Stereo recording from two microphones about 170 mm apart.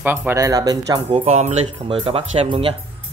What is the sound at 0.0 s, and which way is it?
Speech, 10° right (ahead or behind).